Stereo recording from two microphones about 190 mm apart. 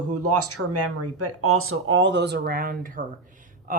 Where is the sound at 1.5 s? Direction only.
90° right; by 3.0 s 45° right (ahead or behind).